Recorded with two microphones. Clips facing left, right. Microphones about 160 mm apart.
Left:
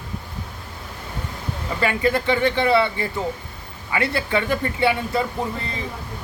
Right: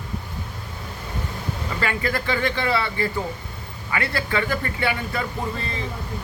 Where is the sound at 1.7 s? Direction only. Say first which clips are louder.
Left 6 dB; 20° left (ahead or behind).